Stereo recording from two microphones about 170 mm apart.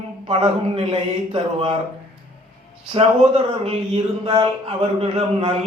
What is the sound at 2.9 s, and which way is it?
A man's voice, 40° right (ahead or behind).